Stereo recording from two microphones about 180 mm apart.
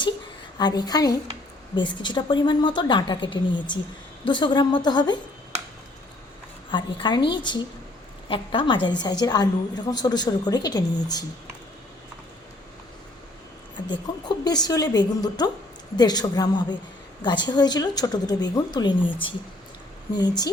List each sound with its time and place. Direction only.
0.6 s a woman's voice: 20° left (ahead or behind)
6.7 s a woman's voice: 25° left (ahead or behind)
14.3 s a woman's voice: 20° left (ahead or behind)